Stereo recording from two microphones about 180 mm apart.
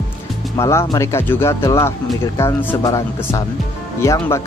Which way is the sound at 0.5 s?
15° left (ahead or behind).